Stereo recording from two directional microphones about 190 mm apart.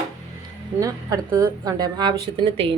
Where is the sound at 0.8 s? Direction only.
15° right (ahead or behind).